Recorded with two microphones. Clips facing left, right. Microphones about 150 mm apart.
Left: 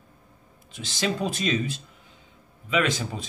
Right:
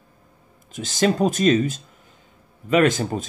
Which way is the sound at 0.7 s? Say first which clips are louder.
Right 8 dB; 45° right (ahead or behind).